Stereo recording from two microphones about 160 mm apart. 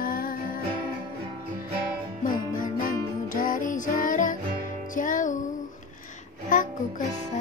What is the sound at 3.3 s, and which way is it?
Music, 60° left (ahead or behind).